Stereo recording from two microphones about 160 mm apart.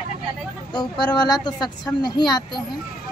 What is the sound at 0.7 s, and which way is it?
A woman's voice, 25° left (ahead or behind).